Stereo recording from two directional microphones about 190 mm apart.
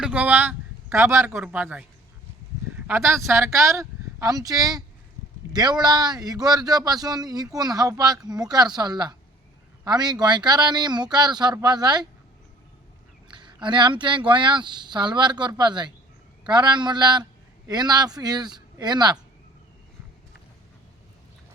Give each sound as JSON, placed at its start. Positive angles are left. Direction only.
{"t": 0.0, "sound": "speech", "side_deg": -5}
{"t": 13.2, "sound": "speech", "side_deg": -25}